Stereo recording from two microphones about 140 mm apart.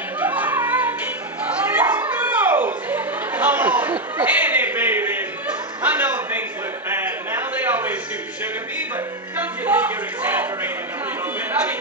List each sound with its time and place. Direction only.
0.2 s music: 10° right (ahead or behind)
1.4 s dog: 10° right (ahead or behind)
2.1 s chatter: 10° right (ahead or behind)
5.8 s music: 15° right (ahead or behind)
6.9 s a sound: 15° right (ahead or behind)
9.4 s a sound: 10° right (ahead or behind)